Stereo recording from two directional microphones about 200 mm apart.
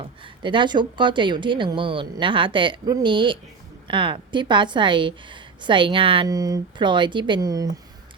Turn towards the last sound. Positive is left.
turn(degrees=-20)  # may be behind; listen again after turning